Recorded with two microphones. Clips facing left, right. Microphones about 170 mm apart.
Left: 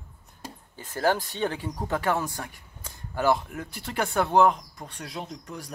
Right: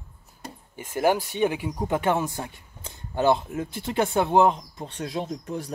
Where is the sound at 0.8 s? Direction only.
15° right (ahead or behind).